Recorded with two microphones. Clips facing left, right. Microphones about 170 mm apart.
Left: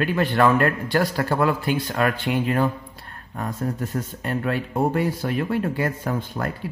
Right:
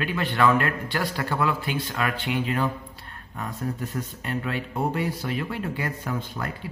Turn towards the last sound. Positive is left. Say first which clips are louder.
# left 4 dB
turn(degrees=50)  # may be behind; listen again after turning